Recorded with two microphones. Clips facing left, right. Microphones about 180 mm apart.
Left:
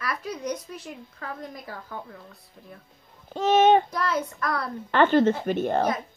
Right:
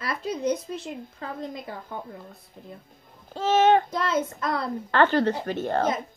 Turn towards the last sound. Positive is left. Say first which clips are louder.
# left 2 dB
turn(degrees=15)  # may be behind; listen again after turning